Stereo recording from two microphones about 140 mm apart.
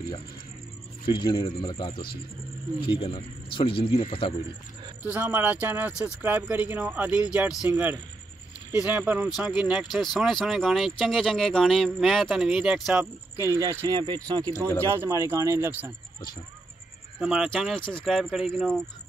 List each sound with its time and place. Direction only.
1.0 s a man's voice: 35° left (ahead or behind)
5.1 s speech: 10° right (ahead or behind)
13.0 s speech: 20° right (ahead or behind)
17.2 s speech: 5° right (ahead or behind)